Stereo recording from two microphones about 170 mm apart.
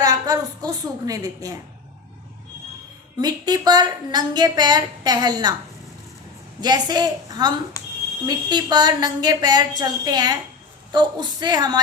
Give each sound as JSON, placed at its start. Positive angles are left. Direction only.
{"t": 0.0, "sound": "a woman's voice", "side_deg": -20}
{"t": 3.2, "sound": "a woman's voice", "side_deg": -25}
{"t": 6.6, "sound": "a woman's voice", "side_deg": -25}
{"t": 7.8, "sound": "a sound", "side_deg": 20}
{"t": 8.3, "sound": "a woman's voice", "side_deg": -25}